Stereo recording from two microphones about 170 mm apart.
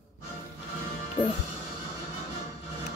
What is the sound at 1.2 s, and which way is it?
Speech, 30° left (ahead or behind).